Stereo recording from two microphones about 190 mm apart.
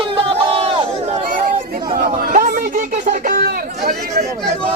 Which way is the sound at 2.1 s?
50° right (ahead or behind).